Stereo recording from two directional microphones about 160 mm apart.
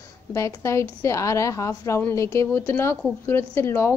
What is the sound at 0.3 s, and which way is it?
A woman's voice, 20° left (ahead or behind).